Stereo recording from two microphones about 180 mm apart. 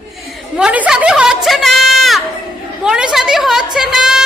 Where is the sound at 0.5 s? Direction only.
5° right (ahead or behind).